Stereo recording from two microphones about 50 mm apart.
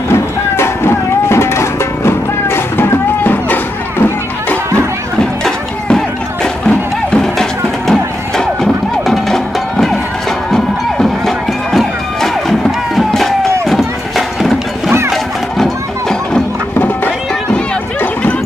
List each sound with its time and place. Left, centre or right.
0.1 s music: left
3.4 s music: left
5.2 s a sound: centre
5.9 s music: centre
13.7 s clip-clop: centre
15.5 s music: centre
16.7 s music: left